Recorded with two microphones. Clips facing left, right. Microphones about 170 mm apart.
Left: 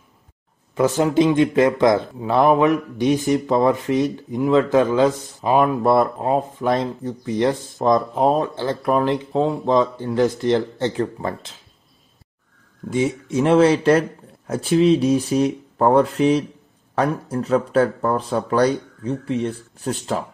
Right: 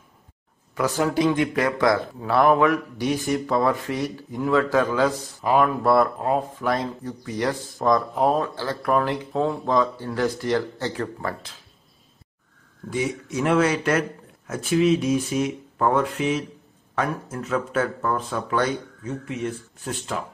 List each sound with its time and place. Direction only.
0.7 s a man's voice: 25° left (ahead or behind)
12.9 s a man's voice: 25° left (ahead or behind)